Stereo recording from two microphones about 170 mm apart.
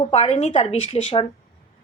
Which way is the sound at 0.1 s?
40° left (ahead or behind).